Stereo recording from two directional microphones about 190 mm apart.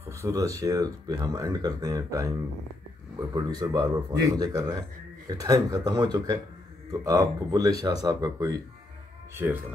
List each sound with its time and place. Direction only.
0.2 s speech: 15° right (ahead or behind)